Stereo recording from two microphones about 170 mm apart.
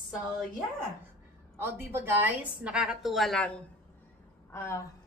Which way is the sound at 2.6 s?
5° right (ahead or behind).